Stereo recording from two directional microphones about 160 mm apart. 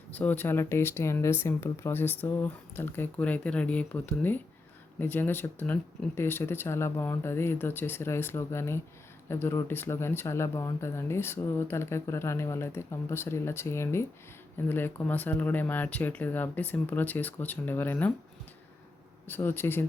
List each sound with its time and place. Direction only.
0.1 s speech: 10° left (ahead or behind)
19.3 s speech: 15° left (ahead or behind)